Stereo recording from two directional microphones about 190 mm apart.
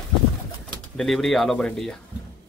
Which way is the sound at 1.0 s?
Centre (ahead or behind).